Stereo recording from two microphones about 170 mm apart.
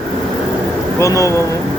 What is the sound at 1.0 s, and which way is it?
Speech, 20° left (ahead or behind).